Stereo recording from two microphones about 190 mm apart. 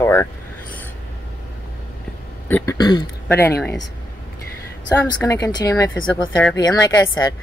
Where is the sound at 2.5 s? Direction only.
20° left (ahead or behind).